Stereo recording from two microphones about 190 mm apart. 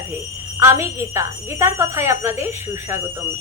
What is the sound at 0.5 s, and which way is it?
A woman's voice, 15° right (ahead or behind).